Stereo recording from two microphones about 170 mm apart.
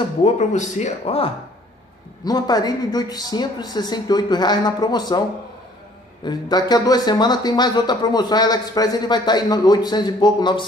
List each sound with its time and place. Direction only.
0.2 s speech: 45° left (ahead or behind)
2.2 s speech: 25° left (ahead or behind)
6.2 s speech: 25° left (ahead or behind)